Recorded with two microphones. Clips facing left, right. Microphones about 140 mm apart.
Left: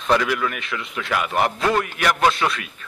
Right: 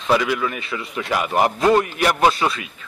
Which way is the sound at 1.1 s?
35° right (ahead or behind).